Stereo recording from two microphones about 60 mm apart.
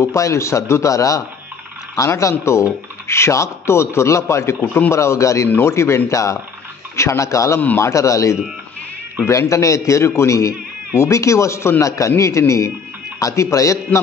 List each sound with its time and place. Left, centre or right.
0.0 s a man's voice: left